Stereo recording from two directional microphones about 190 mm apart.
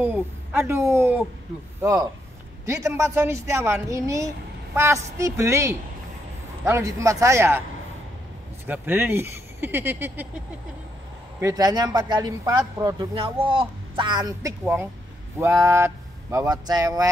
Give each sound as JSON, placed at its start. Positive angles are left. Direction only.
{"t": 0.0, "sound": "speech", "side_deg": -10}
{"t": 8.6, "sound": "speech", "side_deg": -10}
{"t": 11.3, "sound": "a man's voice", "side_deg": -15}
{"t": 14.6, "sound": "speech", "side_deg": -5}